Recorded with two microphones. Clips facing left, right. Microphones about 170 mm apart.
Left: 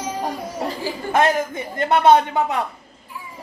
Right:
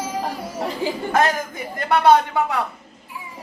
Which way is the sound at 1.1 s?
25° left (ahead or behind).